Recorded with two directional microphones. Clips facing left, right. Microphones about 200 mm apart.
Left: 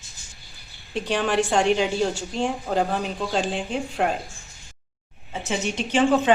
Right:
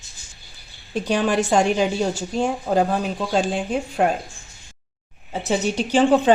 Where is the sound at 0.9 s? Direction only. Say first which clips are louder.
Right 2 dB; 40° right (ahead or behind).